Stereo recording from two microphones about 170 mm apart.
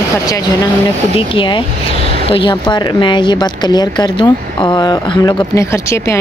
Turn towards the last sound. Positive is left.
turn(degrees=15)  # may be behind; listen again after turning